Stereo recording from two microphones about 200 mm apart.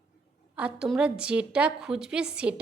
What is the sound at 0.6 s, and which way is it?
A woman's voice, 5° right (ahead or behind).